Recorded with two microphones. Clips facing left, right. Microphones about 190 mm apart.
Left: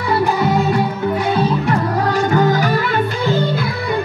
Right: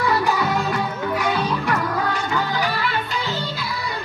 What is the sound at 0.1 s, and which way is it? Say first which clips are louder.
Music: left 10 dB; 25° left (ahead or behind).